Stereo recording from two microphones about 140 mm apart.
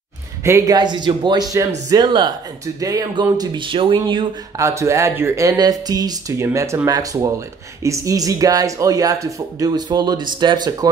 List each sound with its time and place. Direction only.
0.4 s speech: 20° right (ahead or behind); by 4.3 s 35° right (ahead or behind)
4.6 s speech: 20° right (ahead or behind)